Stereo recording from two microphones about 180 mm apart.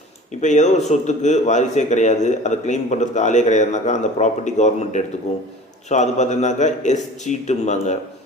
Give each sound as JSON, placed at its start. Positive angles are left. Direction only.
{"t": 0.4, "sound": "a man's voice", "side_deg": 40}